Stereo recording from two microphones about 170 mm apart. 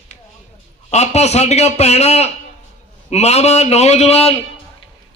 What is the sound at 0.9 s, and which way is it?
A man's voice, 40° left (ahead or behind).